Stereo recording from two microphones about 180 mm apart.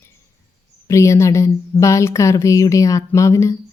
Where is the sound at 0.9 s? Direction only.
15° left (ahead or behind).